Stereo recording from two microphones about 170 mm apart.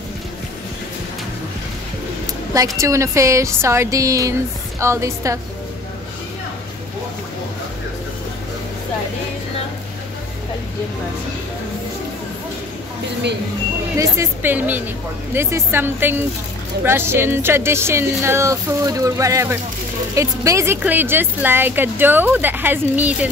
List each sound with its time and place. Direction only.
2.5 s a woman's voice: 20° right (ahead or behind)
13.9 s a woman's voice: 15° right (ahead or behind)